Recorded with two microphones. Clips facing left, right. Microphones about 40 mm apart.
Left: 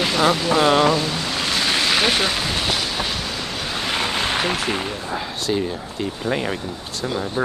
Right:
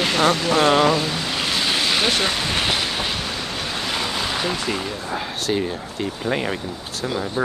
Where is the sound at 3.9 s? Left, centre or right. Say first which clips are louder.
Left 4 dB; left.